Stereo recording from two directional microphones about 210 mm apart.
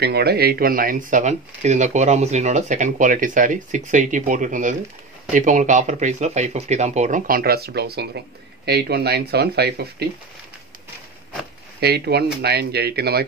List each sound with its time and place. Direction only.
0.0 s speech: 50° right (ahead or behind)
11.8 s speech: 50° right (ahead or behind)